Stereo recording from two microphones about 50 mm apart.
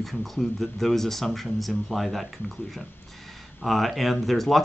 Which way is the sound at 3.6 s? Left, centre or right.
Centre.